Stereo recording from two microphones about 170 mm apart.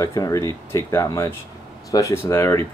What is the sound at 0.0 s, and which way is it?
Speech, 20° left (ahead or behind).